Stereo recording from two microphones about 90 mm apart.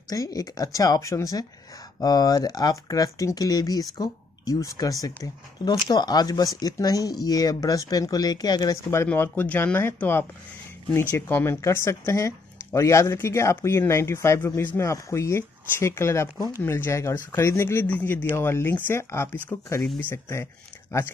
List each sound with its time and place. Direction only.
0.1 s speech: 40° left (ahead or behind)
8.9 s speech: 25° left (ahead or behind)